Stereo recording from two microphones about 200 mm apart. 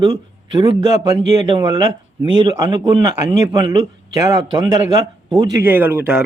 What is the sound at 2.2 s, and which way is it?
A man's voice, 20° right (ahead or behind).